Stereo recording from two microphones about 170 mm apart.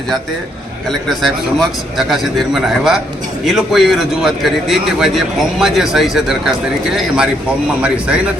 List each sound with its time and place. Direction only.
0.9 s a man's voice: centre (ahead or behind)
7.8 s speech: 5° right (ahead or behind)